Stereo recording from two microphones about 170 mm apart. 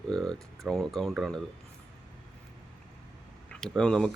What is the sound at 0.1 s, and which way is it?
Speech, centre (ahead or behind).